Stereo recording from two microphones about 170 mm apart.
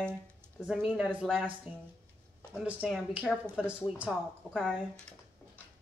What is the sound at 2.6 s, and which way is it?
Speech, 5° right (ahead or behind).